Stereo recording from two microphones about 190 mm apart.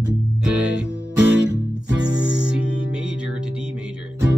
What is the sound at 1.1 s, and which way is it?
Music, 70° right (ahead or behind).